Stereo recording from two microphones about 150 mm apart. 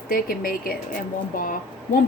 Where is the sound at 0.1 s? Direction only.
75° left (ahead or behind).